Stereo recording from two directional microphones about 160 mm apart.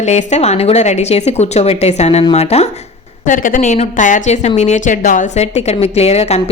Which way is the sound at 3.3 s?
55° left (ahead or behind).